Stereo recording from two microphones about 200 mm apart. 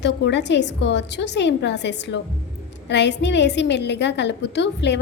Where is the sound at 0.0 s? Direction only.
60° left (ahead or behind).